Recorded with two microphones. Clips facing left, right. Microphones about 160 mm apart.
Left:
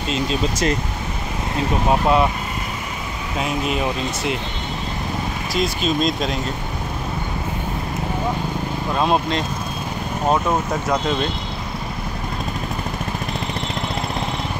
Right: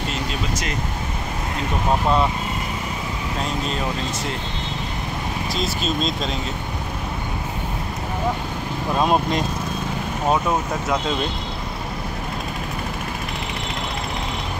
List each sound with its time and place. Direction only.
0.1 s speech: 30° left (ahead or behind)
1.9 s speech: 5° left (ahead or behind)
3.3 s speech: 10° left (ahead or behind)
5.5 s speech: 5° left (ahead or behind)
8.9 s speech: 5° right (ahead or behind)